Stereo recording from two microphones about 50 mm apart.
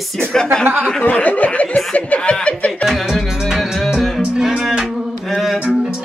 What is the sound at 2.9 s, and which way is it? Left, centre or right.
Music, centre.